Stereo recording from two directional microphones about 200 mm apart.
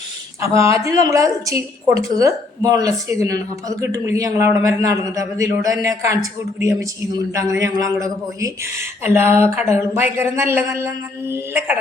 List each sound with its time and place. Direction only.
0.4 s speech: 15° right (ahead or behind)